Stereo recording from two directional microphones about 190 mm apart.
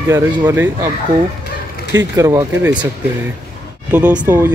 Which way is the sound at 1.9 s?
15° right (ahead or behind).